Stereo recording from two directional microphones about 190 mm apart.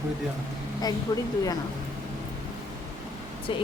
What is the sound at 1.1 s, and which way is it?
Speech, 20° left (ahead or behind).